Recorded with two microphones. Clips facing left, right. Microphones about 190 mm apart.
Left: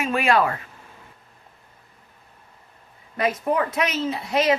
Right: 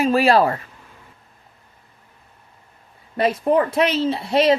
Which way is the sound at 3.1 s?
30° right (ahead or behind).